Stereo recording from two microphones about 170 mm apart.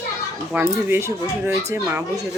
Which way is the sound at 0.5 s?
15° right (ahead or behind).